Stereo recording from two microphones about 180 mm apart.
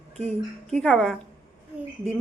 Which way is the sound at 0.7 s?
5° left (ahead or behind).